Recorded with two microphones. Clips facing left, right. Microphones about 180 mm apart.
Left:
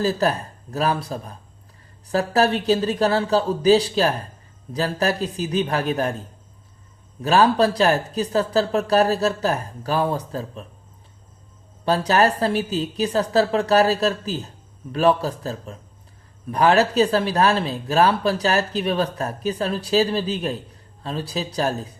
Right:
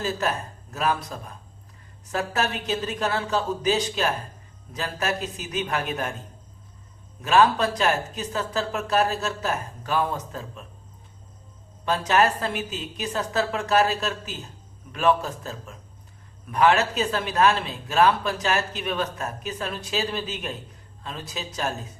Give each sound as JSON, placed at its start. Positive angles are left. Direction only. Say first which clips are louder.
{"t": 0.0, "sound": "speech", "louder": "left 6 dB", "side_deg": 35}
{"t": 7.2, "sound": "speech", "louder": "left 3 dB", "side_deg": 35}
{"t": 11.9, "sound": "speech", "louder": "left 3 dB", "side_deg": 35}